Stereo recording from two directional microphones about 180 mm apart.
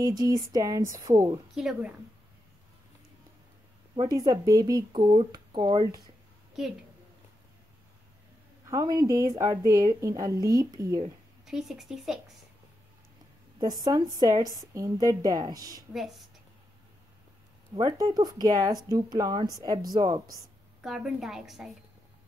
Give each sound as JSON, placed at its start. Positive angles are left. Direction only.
{"t": 0.0, "sound": "speech", "side_deg": -20}
{"t": 1.5, "sound": "a woman's voice", "side_deg": 0}
{"t": 3.9, "sound": "speech", "side_deg": -25}
{"t": 8.6, "sound": "speech", "side_deg": -20}
{"t": 11.4, "sound": "a woman's voice", "side_deg": 0}
{"t": 13.8, "sound": "speech", "side_deg": -20}
{"t": 15.9, "sound": "a woman's voice", "side_deg": 0}
{"t": 17.7, "sound": "speech", "side_deg": -20}
{"t": 20.8, "sound": "a woman's voice", "side_deg": 0}